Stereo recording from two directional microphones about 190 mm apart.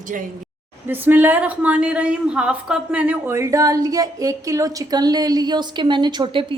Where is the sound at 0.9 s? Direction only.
10° right (ahead or behind).